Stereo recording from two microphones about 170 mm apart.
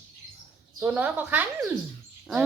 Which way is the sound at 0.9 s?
10° right (ahead or behind).